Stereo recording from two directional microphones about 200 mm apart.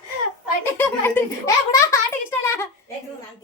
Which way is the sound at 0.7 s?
10° left (ahead or behind).